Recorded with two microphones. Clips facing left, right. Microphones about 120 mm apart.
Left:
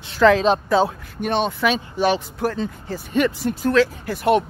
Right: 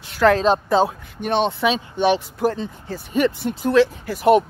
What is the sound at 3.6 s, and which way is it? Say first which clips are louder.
Speech: right 2 dB; 15° right (ahead or behind).